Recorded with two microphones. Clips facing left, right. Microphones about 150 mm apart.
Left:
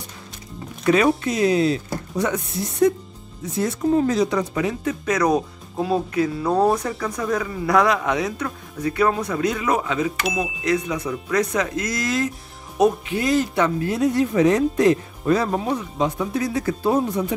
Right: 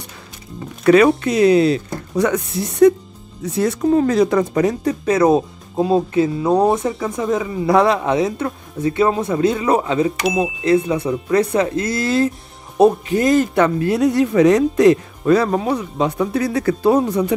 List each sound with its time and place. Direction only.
0.8 s speech: 70° right (ahead or behind); by 10.1 s 30° right (ahead or behind)
10.2 s speech: centre (ahead or behind)
10.6 s speech: 30° right (ahead or behind)
13.1 s speech: 45° right (ahead or behind); by 17.3 s 80° right